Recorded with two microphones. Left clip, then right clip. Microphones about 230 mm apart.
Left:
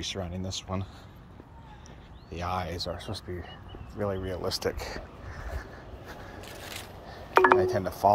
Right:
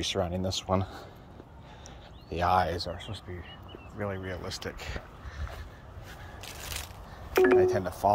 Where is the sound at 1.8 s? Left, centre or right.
Centre.